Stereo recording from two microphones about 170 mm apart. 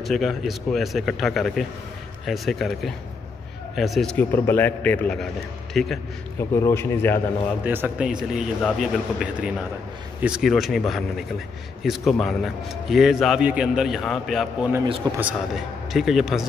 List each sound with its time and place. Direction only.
0.0 s a man's voice: centre (ahead or behind)
6.5 s a man's voice: 15° left (ahead or behind)
7.6 s a man's voice: 10° right (ahead or behind)
15.0 s a man's voice: 25° right (ahead or behind)
15.5 s a man's voice: centre (ahead or behind)